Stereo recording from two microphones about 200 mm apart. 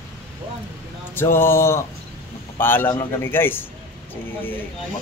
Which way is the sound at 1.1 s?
10° left (ahead or behind).